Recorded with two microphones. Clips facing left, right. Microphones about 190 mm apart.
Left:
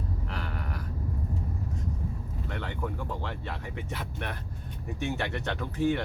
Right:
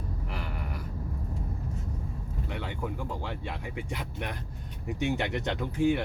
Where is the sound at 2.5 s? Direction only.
10° right (ahead or behind).